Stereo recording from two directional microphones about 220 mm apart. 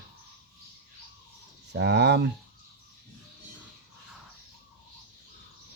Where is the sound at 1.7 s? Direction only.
50° right (ahead or behind).